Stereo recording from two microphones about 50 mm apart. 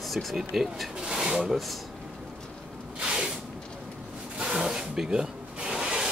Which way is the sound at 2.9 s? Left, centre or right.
Centre.